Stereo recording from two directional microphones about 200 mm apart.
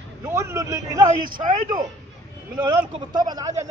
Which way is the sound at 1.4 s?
40° right (ahead or behind).